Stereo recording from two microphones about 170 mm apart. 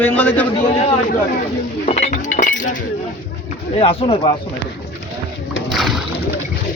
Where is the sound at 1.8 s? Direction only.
40° left (ahead or behind).